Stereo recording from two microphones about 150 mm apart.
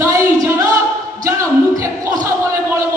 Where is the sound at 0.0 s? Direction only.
20° right (ahead or behind).